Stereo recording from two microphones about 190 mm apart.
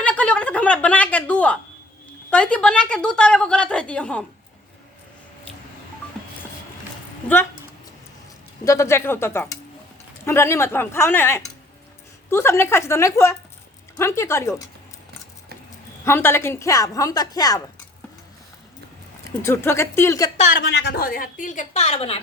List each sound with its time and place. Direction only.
0.0 s a sound: 5° left (ahead or behind)
2.3 s a woman's voice: 5° left (ahead or behind)
8.6 s a woman's voice: 15° left (ahead or behind)
16.0 s a woman's voice: 15° left (ahead or behind)
19.4 s a woman's voice: 15° left (ahead or behind)
20.3 s a woman's voice: 40° left (ahead or behind)